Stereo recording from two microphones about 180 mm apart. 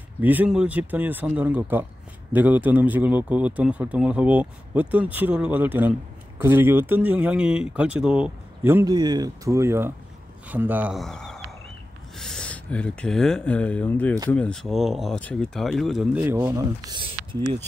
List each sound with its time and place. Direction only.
0.2 s a man's voice: 10° right (ahead or behind)
8.9 s a man's voice: 20° right (ahead or behind); by 16.1 s centre (ahead or behind)
16.2 s a man's voice: 10° right (ahead or behind)
16.9 s speech: 30° right (ahead or behind)